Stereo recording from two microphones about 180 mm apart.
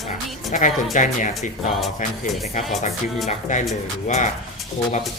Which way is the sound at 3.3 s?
45° left (ahead or behind).